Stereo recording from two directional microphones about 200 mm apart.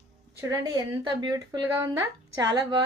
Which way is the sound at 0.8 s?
20° right (ahead or behind).